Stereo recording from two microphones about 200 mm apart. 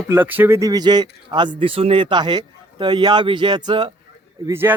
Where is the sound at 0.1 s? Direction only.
10° right (ahead or behind).